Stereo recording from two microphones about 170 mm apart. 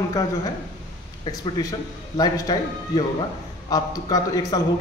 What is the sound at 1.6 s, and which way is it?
A man's voice, 20° left (ahead or behind).